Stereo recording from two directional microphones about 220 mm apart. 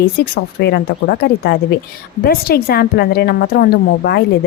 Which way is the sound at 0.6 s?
45° left (ahead or behind).